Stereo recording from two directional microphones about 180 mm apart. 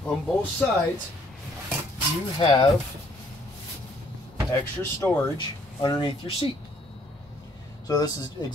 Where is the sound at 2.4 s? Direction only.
25° left (ahead or behind).